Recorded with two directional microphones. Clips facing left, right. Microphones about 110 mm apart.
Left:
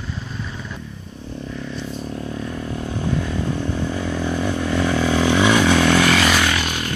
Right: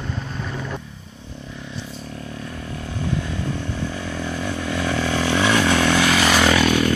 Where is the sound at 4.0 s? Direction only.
5° left (ahead or behind).